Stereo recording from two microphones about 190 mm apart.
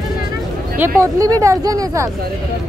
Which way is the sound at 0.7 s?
10° right (ahead or behind).